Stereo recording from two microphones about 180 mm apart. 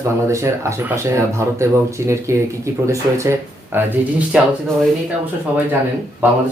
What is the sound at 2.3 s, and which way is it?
Speech, 15° right (ahead or behind).